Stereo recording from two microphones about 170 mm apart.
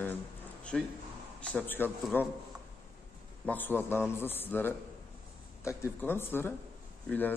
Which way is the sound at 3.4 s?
10° left (ahead or behind).